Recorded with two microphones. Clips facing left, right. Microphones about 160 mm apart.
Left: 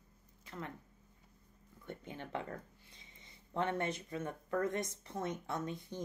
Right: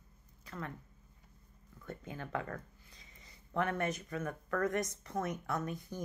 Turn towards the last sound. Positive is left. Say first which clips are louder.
# right 2 dB
turn(degrees=25)  # may be behind; listen again after turning